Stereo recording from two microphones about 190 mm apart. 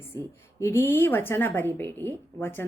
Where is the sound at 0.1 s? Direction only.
10° left (ahead or behind).